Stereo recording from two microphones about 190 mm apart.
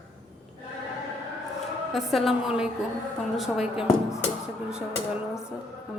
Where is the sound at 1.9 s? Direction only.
Centre (ahead or behind).